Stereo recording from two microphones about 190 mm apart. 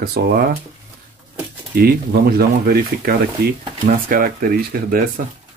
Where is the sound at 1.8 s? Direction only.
55° right (ahead or behind).